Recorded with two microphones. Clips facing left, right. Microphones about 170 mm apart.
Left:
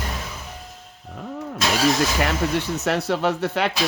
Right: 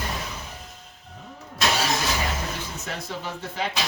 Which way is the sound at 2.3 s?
70° left (ahead or behind).